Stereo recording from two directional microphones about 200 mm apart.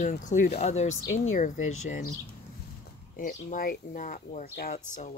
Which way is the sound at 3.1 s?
45° left (ahead or behind).